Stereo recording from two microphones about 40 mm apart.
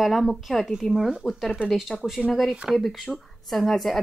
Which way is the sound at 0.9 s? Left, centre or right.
Centre.